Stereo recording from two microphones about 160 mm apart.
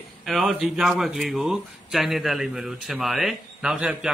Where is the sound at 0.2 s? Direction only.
Centre (ahead or behind).